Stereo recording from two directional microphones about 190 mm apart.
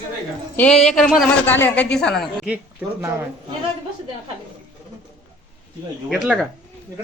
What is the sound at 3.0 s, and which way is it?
Speech, 15° right (ahead or behind).